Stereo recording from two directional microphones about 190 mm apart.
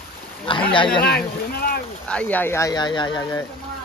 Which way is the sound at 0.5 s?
25° left (ahead or behind).